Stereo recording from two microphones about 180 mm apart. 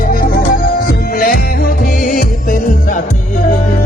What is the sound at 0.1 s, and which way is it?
Music, 55° left (ahead or behind).